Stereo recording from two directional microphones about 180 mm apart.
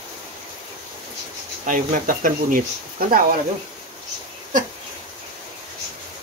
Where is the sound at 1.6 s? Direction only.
45° right (ahead or behind).